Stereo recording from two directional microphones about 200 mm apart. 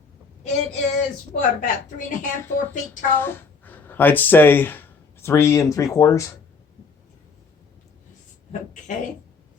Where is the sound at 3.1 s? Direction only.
10° left (ahead or behind).